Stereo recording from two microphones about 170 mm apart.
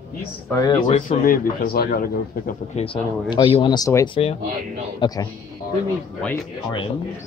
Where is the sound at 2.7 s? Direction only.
35° left (ahead or behind).